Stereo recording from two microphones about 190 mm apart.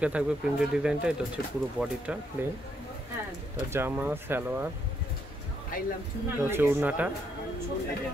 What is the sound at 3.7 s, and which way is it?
Speech, 10° right (ahead or behind).